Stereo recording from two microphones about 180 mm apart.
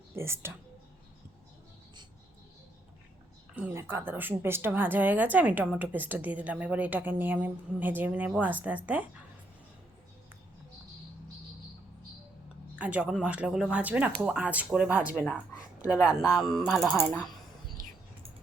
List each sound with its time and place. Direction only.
0.2 s a woman's voice: 15° right (ahead or behind)
3.5 s a woman's voice: 10° right (ahead or behind)
12.8 s a woman's voice: 5° right (ahead or behind)
17.8 s a sound: 50° right (ahead or behind)